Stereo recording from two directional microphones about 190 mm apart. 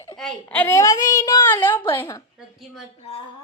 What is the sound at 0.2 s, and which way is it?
A woman's voice, 5° left (ahead or behind).